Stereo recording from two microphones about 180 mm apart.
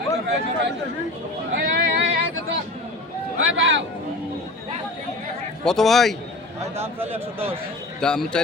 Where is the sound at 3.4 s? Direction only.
90° right.